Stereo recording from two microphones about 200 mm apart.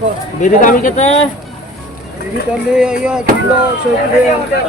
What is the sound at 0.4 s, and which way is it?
Speech, 40° left (ahead or behind).